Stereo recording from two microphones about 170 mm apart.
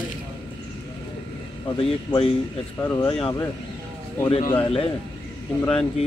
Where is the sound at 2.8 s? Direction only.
15° left (ahead or behind).